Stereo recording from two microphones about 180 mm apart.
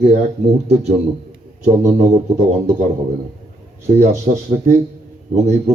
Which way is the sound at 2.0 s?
40° right (ahead or behind).